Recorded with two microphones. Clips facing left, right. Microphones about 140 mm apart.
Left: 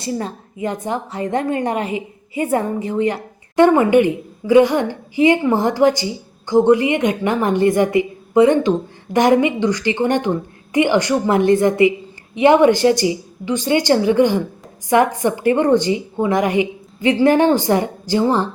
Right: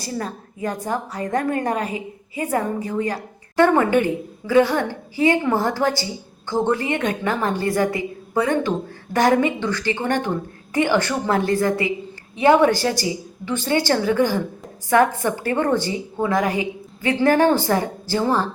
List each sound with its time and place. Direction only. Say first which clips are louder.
0.0 s a woman's voice: left 4 dB; 25° left (ahead or behind)